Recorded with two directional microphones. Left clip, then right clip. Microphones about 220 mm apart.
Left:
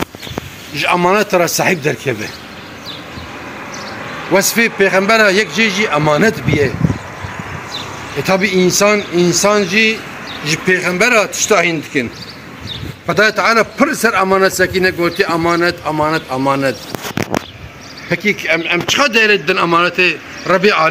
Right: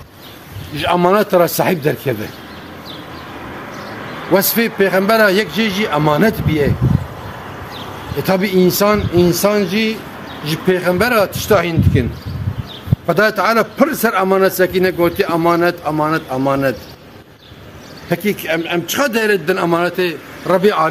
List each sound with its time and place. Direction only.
0.7 s a man's voice: 35° right (ahead or behind)
4.3 s a man's voice: 45° right (ahead or behind)
7.7 s a man's voice: 45° right (ahead or behind)
18.1 s a man's voice: 35° right (ahead or behind); by 20.9 s 20° right (ahead or behind)